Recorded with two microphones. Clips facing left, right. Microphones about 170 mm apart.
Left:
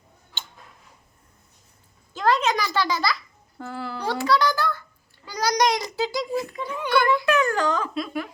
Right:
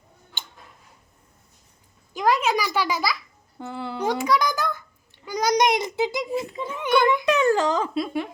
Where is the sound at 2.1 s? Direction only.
10° right (ahead or behind).